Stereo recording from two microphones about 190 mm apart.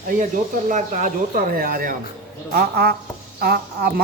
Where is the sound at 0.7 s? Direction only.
45° right (ahead or behind).